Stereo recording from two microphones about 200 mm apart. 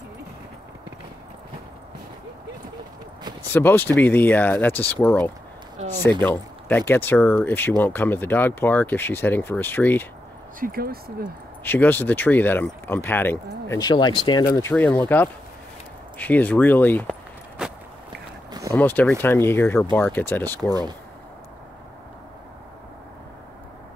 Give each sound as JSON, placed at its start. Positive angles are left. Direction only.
{"t": 3.5, "sound": "speech", "side_deg": 10}
{"t": 10.6, "sound": "speech", "side_deg": -50}
{"t": 11.6, "sound": "speech", "side_deg": 10}
{"t": 17.6, "sound": "walk", "side_deg": -5}
{"t": 18.7, "sound": "speech", "side_deg": 10}